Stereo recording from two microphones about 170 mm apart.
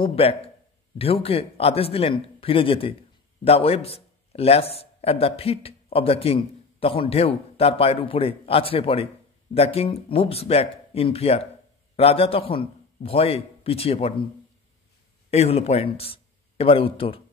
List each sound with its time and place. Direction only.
0.0 s speech: 35° left (ahead or behind)
15.3 s a man's voice: 40° left (ahead or behind)